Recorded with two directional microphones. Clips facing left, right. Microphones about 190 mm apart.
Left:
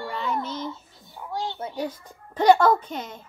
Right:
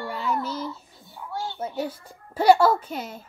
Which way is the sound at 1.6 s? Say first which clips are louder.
Right 1 dB; 5° right (ahead or behind).